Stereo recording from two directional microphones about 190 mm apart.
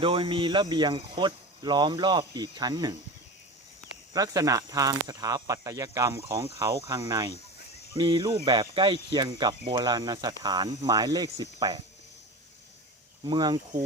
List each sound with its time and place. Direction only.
0.0 s speech: 25° right (ahead or behind)
4.1 s speech: 20° right (ahead or behind)
13.2 s speech: 25° right (ahead or behind)